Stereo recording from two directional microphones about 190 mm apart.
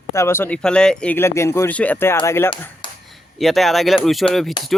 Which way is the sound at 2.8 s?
25° left (ahead or behind).